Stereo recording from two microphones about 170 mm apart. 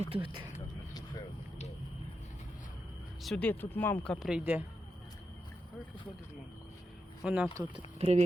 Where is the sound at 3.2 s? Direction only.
5° left (ahead or behind).